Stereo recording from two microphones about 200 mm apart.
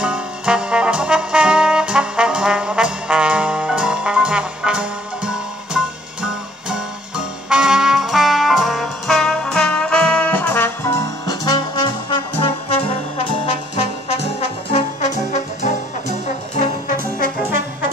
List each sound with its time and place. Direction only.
0.0 s brass instrument: 5° right (ahead or behind); by 12.8 s 25° left (ahead or behind)
13.7 s trombone: 30° left (ahead or behind)